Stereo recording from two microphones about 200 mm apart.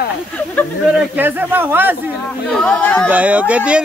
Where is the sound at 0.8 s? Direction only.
5° right (ahead or behind).